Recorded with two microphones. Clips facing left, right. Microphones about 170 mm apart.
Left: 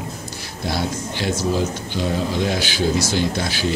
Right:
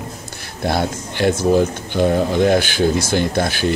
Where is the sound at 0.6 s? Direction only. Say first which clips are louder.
Right 4 dB; 55° right (ahead or behind).